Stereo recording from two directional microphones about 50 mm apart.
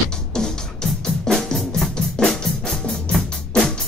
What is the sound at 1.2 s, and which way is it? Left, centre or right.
Drum, centre.